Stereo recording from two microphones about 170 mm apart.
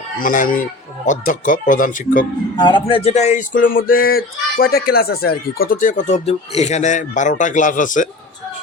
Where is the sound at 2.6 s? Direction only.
25° left (ahead or behind).